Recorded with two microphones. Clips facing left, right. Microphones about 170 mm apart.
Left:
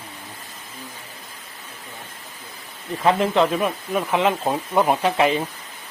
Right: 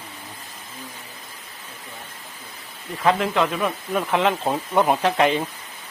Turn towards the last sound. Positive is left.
turn(degrees=0)  # may be behind; listen again after turning